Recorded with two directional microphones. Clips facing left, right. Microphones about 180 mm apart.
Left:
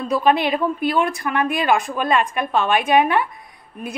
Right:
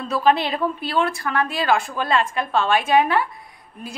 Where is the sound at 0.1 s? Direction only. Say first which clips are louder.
Left 1 dB; 15° left (ahead or behind).